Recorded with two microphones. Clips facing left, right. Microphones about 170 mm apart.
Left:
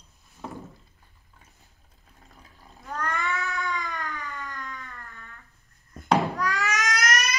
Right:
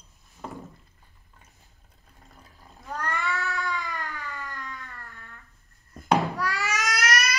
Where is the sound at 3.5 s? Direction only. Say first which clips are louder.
Even; centre (ahead or behind).